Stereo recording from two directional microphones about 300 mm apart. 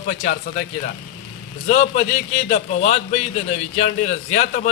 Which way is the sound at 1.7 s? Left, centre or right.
Left.